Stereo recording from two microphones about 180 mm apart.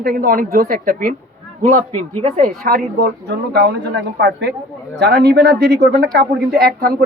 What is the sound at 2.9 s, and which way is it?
A man's voice, 65° right (ahead or behind).